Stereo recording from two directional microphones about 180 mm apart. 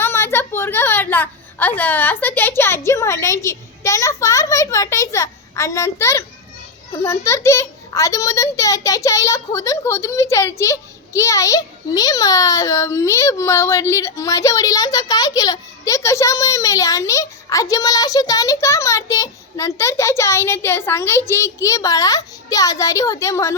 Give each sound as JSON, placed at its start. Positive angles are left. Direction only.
{"t": 0.0, "sound": "a woman's voice", "side_deg": 15}